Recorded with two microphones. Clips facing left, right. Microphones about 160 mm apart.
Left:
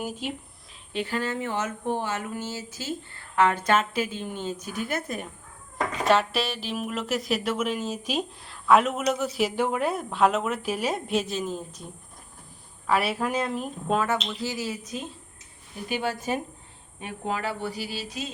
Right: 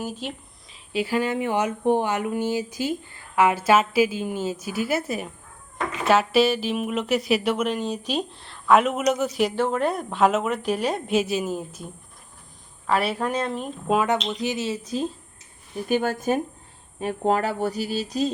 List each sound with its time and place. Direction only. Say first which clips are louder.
0.0 s a sound: right 1 dB; 10° left (ahead or behind)
0.9 s speech: right 5 dB; 10° right (ahead or behind)
5.7 s cat: even; 40° left (ahead or behind)
6.1 s speech: right 5 dB; 5° right (ahead or behind)
12.9 s speech: right 2 dB; centre (ahead or behind)
13.9 s speech: right 4 dB; 15° right (ahead or behind)
15.9 s speech: right 6 dB; 50° right (ahead or behind)